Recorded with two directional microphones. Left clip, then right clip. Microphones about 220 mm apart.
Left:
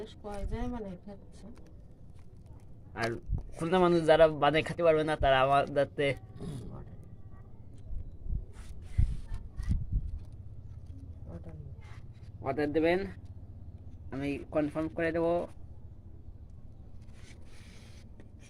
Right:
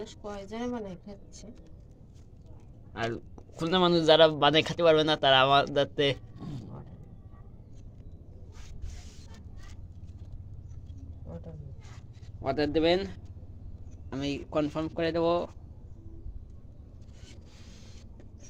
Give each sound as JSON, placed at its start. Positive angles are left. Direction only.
{"t": 0.3, "sound": "speech", "side_deg": -20}
{"t": 2.9, "sound": "speech", "side_deg": 0}
{"t": 12.4, "sound": "speech", "side_deg": -10}